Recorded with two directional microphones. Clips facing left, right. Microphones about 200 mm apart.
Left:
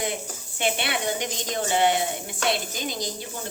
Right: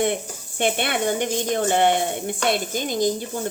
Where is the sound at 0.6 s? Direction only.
50° right (ahead or behind).